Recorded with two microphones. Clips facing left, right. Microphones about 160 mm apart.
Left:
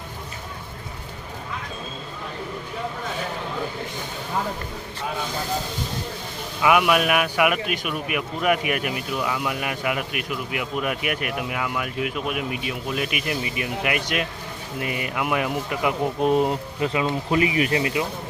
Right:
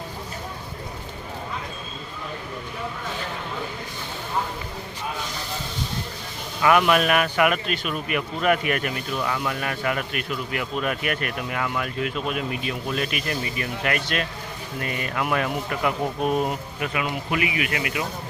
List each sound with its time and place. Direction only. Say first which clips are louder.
6.6 s a man's voice: even; 10° left (ahead or behind); by 18.0 s 30° left (ahead or behind)